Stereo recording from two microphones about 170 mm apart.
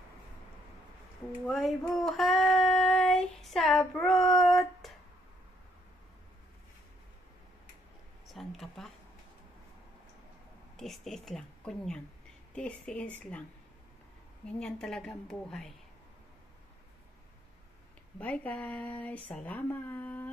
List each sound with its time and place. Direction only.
1.4 s child singing: centre (ahead or behind)
8.3 s a sound: centre (ahead or behind)
10.8 s a woman's voice: centre (ahead or behind)
14.4 s a woman's voice: 5° left (ahead or behind)
18.2 s speech: 10° left (ahead or behind)